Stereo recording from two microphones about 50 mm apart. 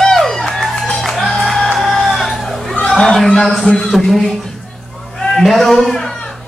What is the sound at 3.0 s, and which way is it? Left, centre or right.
Speech, centre.